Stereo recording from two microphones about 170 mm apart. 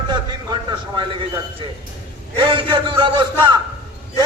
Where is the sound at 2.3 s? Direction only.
30° right (ahead or behind).